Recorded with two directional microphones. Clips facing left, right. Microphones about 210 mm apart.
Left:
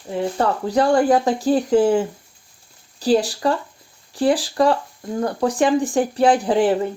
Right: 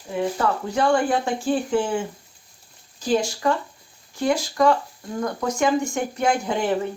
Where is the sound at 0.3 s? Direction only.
35° left (ahead or behind).